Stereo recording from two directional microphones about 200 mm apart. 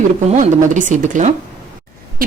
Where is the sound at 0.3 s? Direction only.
40° right (ahead or behind).